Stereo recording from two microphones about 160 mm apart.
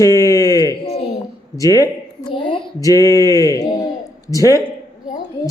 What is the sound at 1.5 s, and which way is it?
Speech, 20° left (ahead or behind).